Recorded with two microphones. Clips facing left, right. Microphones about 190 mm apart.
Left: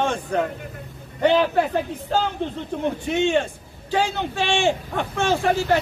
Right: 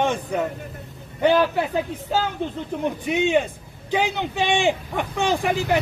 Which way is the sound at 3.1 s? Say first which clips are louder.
Right 1 dB; 15° right (ahead or behind).